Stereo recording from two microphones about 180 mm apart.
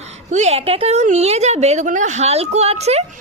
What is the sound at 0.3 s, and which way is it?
A woman's voice, 40° right (ahead or behind).